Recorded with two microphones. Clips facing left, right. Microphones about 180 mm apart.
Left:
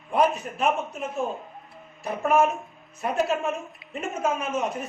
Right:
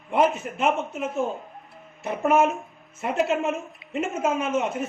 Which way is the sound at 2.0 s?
25° right (ahead or behind).